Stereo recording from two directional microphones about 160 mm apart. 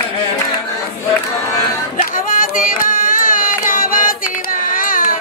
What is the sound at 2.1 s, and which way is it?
Carnatic music, 60° left (ahead or behind).